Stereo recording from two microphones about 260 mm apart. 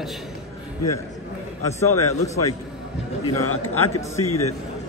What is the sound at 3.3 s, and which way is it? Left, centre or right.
A man's voice, left.